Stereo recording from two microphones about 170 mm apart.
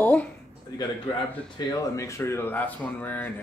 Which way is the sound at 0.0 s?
10° left (ahead or behind).